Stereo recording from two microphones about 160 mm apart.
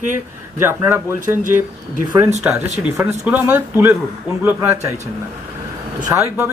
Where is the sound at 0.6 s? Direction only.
15° right (ahead or behind).